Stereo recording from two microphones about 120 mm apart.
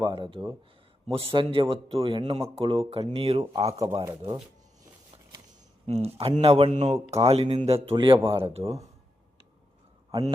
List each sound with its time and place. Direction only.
0.0 s speech: 45° right (ahead or behind)
1.0 s speech: 55° right (ahead or behind)
5.8 s speech: 60° right (ahead or behind)
7.9 s speech: 45° right (ahead or behind)